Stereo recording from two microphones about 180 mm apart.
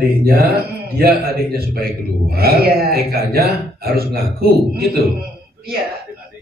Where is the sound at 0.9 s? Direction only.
60° right (ahead or behind).